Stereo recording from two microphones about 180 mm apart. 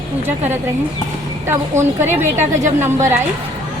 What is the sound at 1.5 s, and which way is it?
A woman's voice, 15° right (ahead or behind).